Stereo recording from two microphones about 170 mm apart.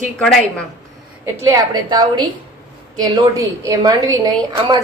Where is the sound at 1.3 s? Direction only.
20° right (ahead or behind).